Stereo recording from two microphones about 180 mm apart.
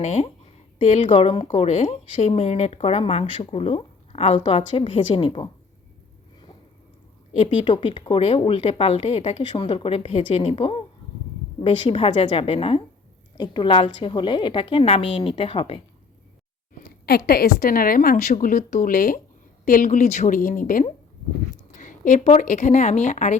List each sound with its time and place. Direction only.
0.0 s speech: 35° left (ahead or behind)
7.3 s a woman's voice: 30° left (ahead or behind)
16.7 s a woman's voice: 55° left (ahead or behind)